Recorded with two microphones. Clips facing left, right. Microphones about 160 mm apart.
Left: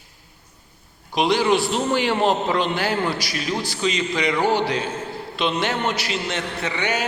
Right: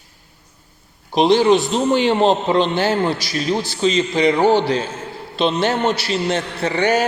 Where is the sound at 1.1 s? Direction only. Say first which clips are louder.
Right 6 dB; 30° right (ahead or behind).